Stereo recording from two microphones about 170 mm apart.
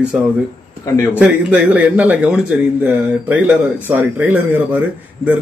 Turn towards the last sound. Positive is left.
turn(degrees=-10)  # may be behind; listen again after turning